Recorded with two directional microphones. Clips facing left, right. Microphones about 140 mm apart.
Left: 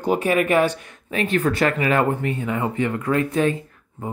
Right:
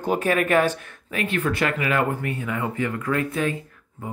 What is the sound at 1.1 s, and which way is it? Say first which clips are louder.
Speech: left 4 dB; 30° left (ahead or behind).